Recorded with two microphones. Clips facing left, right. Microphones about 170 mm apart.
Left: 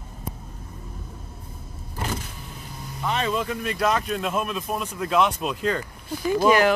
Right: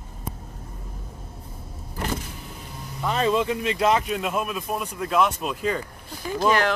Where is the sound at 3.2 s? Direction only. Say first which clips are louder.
Right 6 dB; 25° right (ahead or behind).